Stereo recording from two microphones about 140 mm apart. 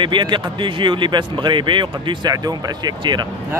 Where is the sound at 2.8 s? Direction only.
30° right (ahead or behind).